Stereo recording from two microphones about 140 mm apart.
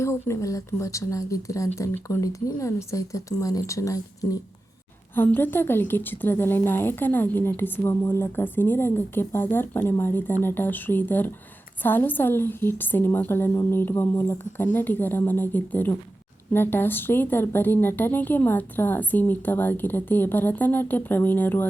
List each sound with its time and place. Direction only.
0.0 s a woman's voice: 20° left (ahead or behind)